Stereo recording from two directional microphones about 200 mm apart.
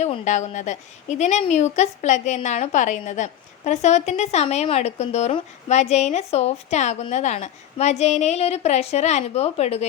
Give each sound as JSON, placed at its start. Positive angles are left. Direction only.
{"t": 0.0, "sound": "a woman's voice", "side_deg": 35}